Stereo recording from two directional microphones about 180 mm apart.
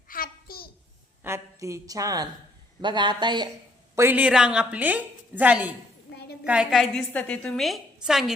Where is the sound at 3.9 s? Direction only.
10° right (ahead or behind).